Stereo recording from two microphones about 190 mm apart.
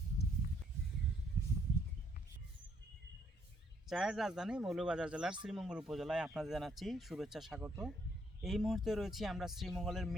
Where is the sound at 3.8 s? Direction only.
Centre (ahead or behind).